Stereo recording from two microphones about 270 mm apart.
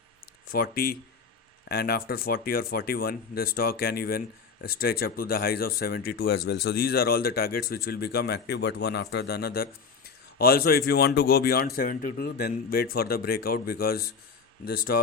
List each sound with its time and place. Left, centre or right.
0.5 s a man's voice: left